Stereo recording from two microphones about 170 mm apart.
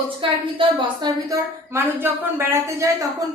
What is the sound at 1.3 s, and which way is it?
A woman's voice, 15° right (ahead or behind).